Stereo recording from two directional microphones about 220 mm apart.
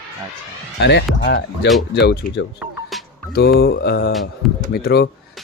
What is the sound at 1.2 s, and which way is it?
Speech, 50° left (ahead or behind).